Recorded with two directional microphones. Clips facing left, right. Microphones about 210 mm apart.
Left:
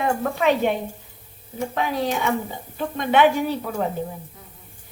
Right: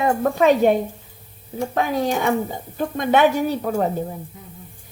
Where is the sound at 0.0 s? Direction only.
40° right (ahead or behind).